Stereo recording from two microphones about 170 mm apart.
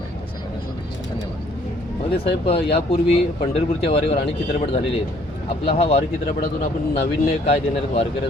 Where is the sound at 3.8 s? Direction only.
35° left (ahead or behind).